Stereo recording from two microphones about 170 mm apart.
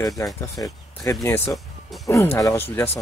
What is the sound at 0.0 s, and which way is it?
Speech, 20° left (ahead or behind).